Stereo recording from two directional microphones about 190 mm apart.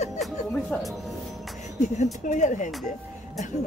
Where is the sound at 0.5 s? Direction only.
Centre (ahead or behind).